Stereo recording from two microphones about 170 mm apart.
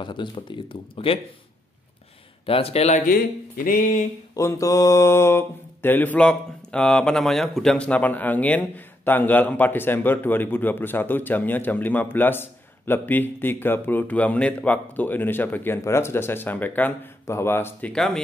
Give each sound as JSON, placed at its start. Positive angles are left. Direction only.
{"t": 0.0, "sound": "speech", "side_deg": 30}
{"t": 2.4, "sound": "speech", "side_deg": 35}
{"t": 3.1, "sound": "speech", "side_deg": 55}
{"t": 4.4, "sound": "mantra", "side_deg": 20}